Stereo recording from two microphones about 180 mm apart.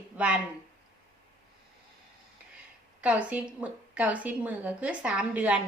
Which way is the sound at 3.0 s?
5° right (ahead or behind).